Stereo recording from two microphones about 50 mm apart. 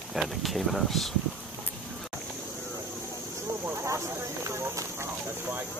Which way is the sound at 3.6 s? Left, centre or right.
Right.